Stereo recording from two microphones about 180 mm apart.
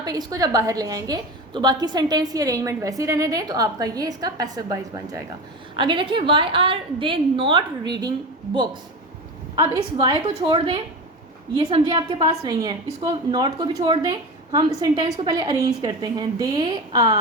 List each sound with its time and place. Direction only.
0.0 s a woman's voice: 20° right (ahead or behind)
9.6 s a woman's voice: 20° right (ahead or behind)